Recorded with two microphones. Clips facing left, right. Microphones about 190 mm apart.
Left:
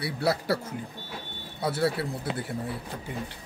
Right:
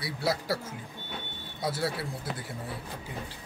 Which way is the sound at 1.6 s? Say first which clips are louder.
Left 5 dB; 60° left (ahead or behind).